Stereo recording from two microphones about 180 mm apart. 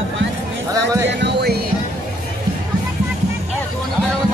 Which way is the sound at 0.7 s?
15° right (ahead or behind).